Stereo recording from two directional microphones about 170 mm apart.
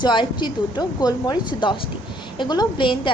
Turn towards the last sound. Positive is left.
turn(degrees=30)  # may be behind; listen again after turning